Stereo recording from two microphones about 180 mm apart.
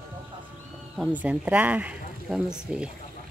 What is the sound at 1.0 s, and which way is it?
Speech, 10° right (ahead or behind).